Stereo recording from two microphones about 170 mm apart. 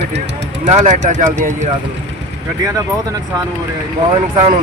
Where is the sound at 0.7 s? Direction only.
45° right (ahead or behind).